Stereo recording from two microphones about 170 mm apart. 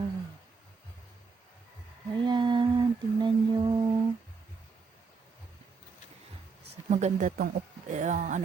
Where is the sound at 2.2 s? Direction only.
25° right (ahead or behind).